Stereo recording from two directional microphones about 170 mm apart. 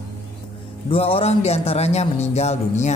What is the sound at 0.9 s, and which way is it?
A man's voice, 35° left (ahead or behind).